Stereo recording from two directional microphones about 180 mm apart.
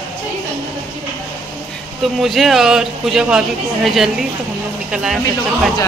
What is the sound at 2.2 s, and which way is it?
Speech, centre (ahead or behind).